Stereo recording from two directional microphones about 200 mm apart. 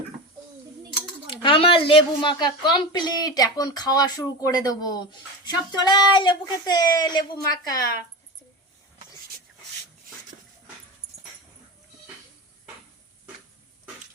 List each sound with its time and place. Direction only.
1.3 s a woman's voice: 25° left (ahead or behind)